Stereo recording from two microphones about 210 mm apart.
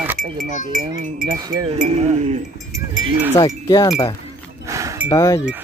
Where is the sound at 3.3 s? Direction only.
15° left (ahead or behind).